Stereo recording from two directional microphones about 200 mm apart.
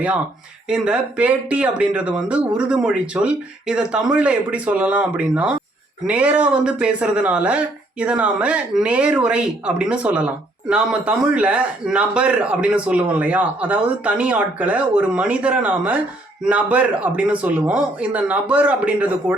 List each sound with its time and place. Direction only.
0.7 s speech: 5° right (ahead or behind)